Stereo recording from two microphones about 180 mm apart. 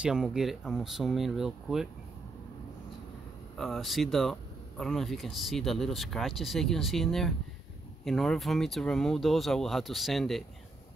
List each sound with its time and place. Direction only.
0.0 s speech: 5° right (ahead or behind)
3.5 s speech: centre (ahead or behind)